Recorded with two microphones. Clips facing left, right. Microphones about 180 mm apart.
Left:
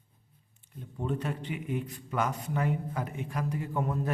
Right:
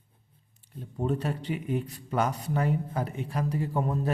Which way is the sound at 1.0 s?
35° right (ahead or behind).